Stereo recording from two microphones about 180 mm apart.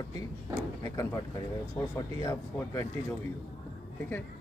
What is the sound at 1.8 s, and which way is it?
Speech, 5° left (ahead or behind).